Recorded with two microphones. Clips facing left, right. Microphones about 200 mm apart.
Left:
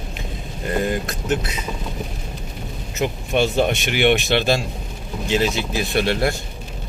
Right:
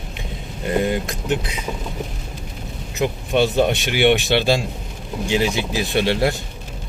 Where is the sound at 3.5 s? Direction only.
15° right (ahead or behind).